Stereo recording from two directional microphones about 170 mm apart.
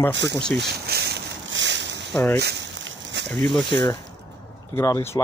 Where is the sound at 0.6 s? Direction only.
75° right (ahead or behind).